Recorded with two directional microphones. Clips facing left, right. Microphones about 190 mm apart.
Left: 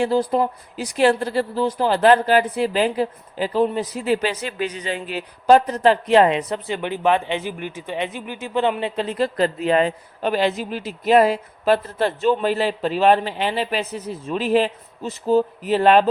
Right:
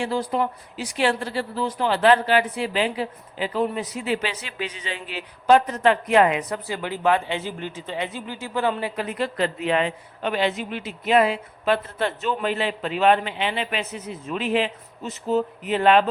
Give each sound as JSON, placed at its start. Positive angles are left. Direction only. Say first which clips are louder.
{"t": 0.0, "sound": "speech", "louder": "left 5 dB", "side_deg": 35}